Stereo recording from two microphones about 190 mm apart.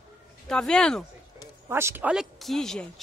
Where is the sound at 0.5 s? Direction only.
5° left (ahead or behind).